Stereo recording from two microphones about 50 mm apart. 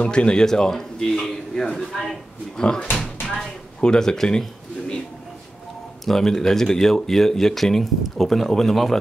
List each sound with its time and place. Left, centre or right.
0.0 s a man's voice: left
3.3 s pigeon: centre
6.0 s speech: centre